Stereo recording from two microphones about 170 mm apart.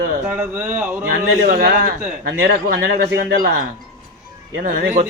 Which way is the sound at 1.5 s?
55° right (ahead or behind).